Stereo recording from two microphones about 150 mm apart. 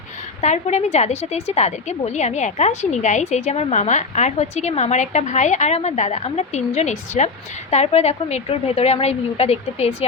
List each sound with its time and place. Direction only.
0.4 s a woman's voice: 50° left (ahead or behind)